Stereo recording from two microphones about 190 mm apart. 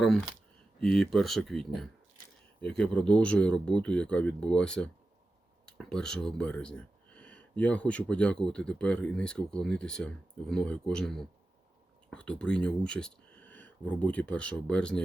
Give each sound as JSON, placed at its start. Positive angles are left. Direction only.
{"t": 0.8, "sound": "speech", "side_deg": 5}